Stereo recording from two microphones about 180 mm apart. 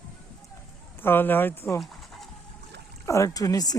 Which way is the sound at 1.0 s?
10° left (ahead or behind).